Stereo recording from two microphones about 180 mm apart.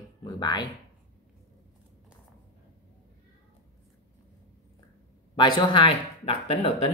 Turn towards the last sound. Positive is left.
turn(degrees=30)  # may be behind; listen again after turning